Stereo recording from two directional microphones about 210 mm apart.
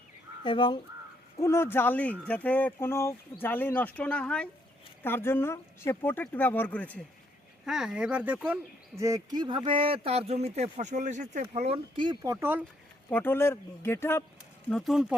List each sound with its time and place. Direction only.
0.4 s speech: 25° left (ahead or behind)
1.4 s speech: 10° left (ahead or behind); by 12.1 s 25° right (ahead or behind)
12.2 s speech: 15° right (ahead or behind)
13.1 s speech: 10° left (ahead or behind)
14.7 s speech: centre (ahead or behind)